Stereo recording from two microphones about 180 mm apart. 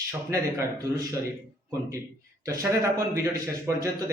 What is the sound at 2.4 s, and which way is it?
Speech, 15° right (ahead or behind).